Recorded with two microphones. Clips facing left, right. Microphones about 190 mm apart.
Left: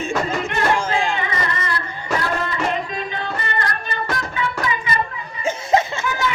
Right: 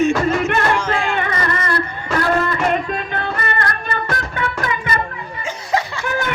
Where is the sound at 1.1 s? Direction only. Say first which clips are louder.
Right 3 dB; 55° right (ahead or behind).